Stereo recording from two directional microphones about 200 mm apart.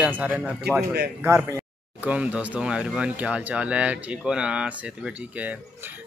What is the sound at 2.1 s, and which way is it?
Speech, 5° right (ahead or behind).